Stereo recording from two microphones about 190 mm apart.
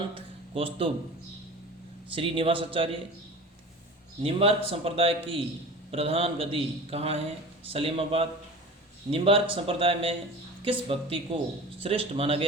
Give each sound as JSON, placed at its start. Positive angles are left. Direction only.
{"t": 0.5, "sound": "speech", "side_deg": -30}
{"t": 2.1, "sound": "speech", "side_deg": -25}
{"t": 4.2, "sound": "a man's voice", "side_deg": -30}